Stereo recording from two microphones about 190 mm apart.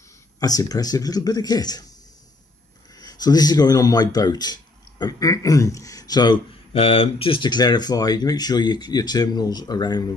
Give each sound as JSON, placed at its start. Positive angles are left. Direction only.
{"t": 0.4, "sound": "speech", "side_deg": 20}
{"t": 3.0, "sound": "speech", "side_deg": 20}